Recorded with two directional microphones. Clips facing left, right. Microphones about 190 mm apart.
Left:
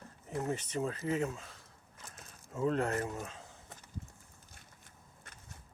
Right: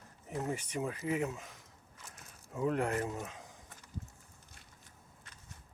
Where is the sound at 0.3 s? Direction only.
15° right (ahead or behind).